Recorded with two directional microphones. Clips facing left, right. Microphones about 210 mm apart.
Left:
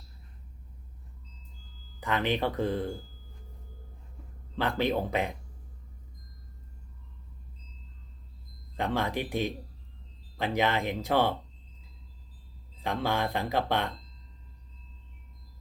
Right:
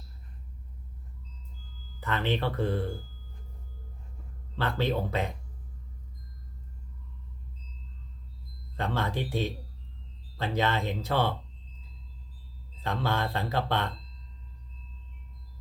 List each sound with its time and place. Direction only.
2.0 s speech: 15° left (ahead or behind)
4.5 s speech: 15° left (ahead or behind)
8.7 s speech: 15° left (ahead or behind)
12.8 s speech: 15° left (ahead or behind)